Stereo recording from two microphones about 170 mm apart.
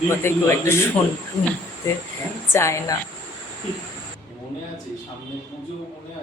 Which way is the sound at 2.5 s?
15° left (ahead or behind).